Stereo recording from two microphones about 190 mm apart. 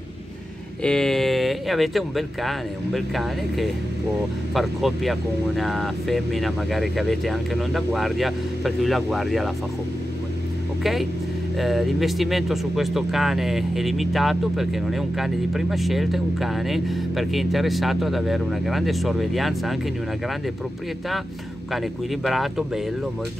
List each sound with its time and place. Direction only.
0.8 s speech: 5° left (ahead or behind)
10.8 s speech: centre (ahead or behind)
21.7 s speech: centre (ahead or behind)